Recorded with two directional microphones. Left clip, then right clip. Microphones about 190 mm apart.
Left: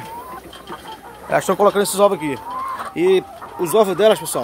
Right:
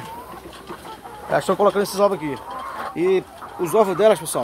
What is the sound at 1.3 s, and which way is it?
Speech, 15° left (ahead or behind).